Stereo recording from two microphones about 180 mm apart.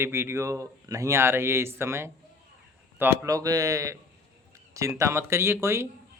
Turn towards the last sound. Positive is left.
turn(degrees=-15)  # may be behind; listen again after turning